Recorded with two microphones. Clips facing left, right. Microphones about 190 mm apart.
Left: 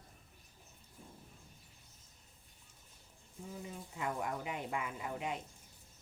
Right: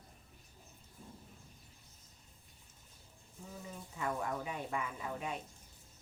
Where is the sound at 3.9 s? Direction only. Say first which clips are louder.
Right 1 dB; 20° left (ahead or behind).